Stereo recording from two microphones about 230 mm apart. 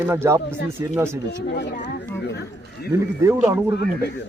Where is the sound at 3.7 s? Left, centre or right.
Left.